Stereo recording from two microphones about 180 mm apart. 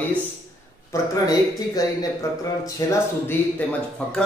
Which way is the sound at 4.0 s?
5° left (ahead or behind).